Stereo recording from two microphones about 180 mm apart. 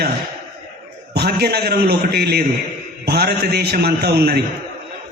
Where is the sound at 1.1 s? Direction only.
65° right (ahead or behind).